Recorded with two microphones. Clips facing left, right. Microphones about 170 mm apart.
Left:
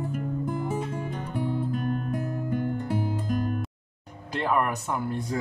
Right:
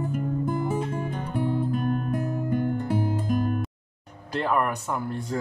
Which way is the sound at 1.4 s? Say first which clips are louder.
Right 3 dB; 55° right (ahead or behind).